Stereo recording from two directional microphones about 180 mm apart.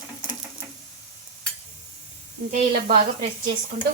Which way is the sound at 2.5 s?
55° right (ahead or behind).